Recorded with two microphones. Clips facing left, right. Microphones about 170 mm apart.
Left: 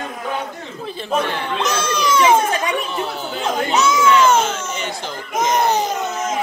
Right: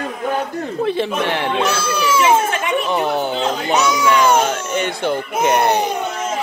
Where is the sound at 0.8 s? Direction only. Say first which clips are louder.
Right 1 dB; 70° right (ahead or behind).